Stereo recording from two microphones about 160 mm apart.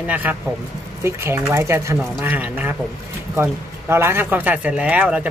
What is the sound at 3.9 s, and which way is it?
Speech, 15° right (ahead or behind).